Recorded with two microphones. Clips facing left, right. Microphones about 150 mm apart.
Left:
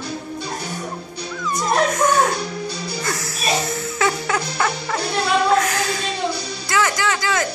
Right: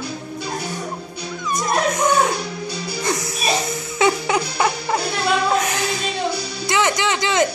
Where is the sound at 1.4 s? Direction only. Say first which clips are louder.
Left 1 dB; 20° right (ahead or behind).